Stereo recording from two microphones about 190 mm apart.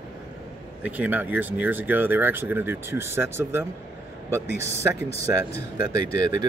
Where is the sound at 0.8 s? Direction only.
10° right (ahead or behind).